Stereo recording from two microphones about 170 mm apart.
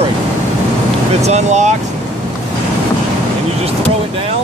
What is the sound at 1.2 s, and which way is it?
Speech, 40° right (ahead or behind).